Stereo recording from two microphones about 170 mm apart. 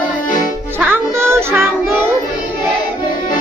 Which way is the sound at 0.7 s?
10° right (ahead or behind).